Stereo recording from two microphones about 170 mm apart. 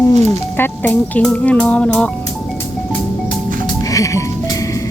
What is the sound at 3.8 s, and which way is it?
Music, 20° left (ahead or behind).